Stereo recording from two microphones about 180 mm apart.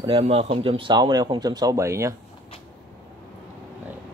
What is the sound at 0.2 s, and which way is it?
Speech, 35° right (ahead or behind).